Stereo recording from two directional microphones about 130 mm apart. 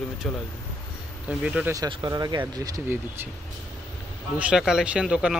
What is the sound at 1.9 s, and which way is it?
Speech, 35° right (ahead or behind).